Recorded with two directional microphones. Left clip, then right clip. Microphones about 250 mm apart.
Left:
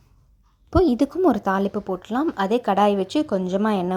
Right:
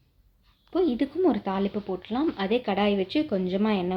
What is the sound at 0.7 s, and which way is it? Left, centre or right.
A woman's voice, left.